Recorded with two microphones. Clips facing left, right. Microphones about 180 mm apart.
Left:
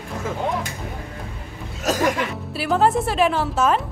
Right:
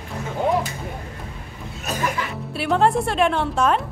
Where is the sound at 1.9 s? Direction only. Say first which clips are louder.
Left 6 dB; 90° left.